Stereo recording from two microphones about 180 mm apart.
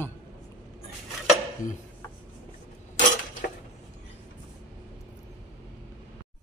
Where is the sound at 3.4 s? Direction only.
55° left (ahead or behind).